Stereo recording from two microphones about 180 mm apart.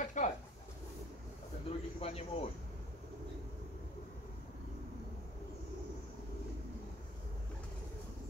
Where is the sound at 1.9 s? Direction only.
35° left (ahead or behind).